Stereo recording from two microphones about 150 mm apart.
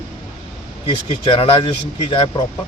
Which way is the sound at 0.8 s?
35° left (ahead or behind).